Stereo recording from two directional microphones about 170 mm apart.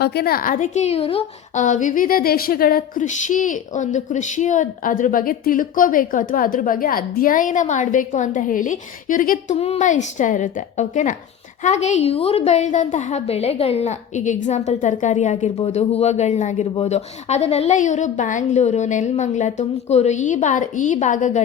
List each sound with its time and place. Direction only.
0.0 s a woman's voice: 70° left (ahead or behind); by 9.6 s 55° left (ahead or behind)
9.6 s a woman's voice: 40° left (ahead or behind)